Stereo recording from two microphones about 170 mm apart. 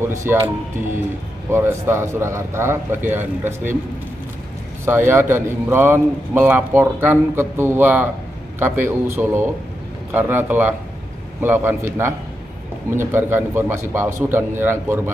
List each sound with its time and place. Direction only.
0.0 s speech: 15° right (ahead or behind)
1.5 s a man's voice: 15° right (ahead or behind)
4.8 s a man's voice: 15° right (ahead or behind)